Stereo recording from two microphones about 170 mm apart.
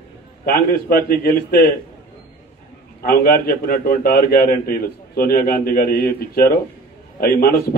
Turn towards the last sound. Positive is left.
turn(degrees=60)  # may be behind; listen again after turning